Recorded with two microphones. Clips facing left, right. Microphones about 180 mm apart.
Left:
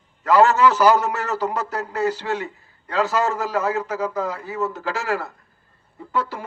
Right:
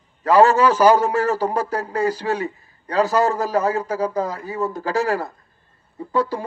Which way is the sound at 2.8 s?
35° right (ahead or behind).